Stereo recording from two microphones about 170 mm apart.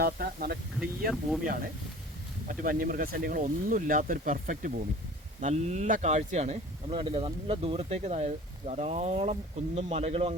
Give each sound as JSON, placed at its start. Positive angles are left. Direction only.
{"t": 0.0, "sound": "speech", "side_deg": -60}
{"t": 0.8, "sound": "speech", "side_deg": 0}
{"t": 2.5, "sound": "speech", "side_deg": -55}
{"t": 5.4, "sound": "speech", "side_deg": -40}